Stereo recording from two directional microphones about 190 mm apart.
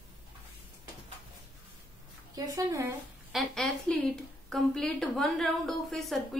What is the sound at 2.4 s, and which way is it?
Speech, 15° right (ahead or behind).